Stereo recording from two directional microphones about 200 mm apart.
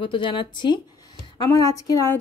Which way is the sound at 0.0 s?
25° left (ahead or behind).